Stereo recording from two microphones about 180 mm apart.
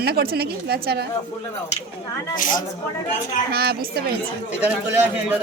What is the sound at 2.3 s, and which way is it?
Speech, 50° left (ahead or behind).